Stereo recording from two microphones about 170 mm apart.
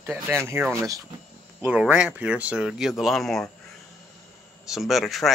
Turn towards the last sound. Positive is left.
turn(degrees=0)  # may be behind; listen again after turning